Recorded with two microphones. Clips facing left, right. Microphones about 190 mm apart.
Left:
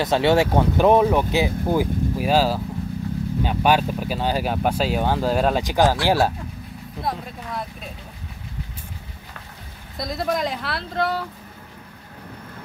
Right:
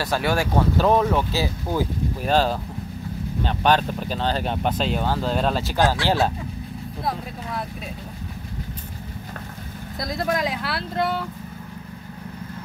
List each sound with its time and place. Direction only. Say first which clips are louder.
0.0 s speech: left 5 dB; 25° left (ahead or behind)
7.0 s speech: left 1 dB; centre (ahead or behind)
9.9 s speech: even; centre (ahead or behind)